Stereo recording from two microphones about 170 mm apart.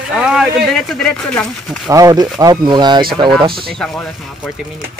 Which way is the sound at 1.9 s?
20° right (ahead or behind).